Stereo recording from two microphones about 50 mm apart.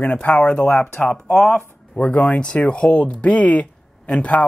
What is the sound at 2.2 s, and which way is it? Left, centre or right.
Speech, left.